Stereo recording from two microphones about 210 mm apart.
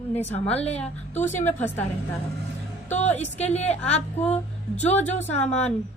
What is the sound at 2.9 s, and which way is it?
Speech, 35° left (ahead or behind).